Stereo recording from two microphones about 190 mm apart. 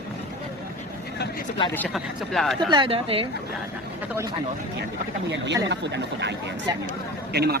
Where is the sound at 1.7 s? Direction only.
5° left (ahead or behind).